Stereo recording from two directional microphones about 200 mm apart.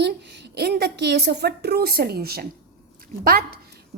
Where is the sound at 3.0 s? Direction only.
50° right (ahead or behind).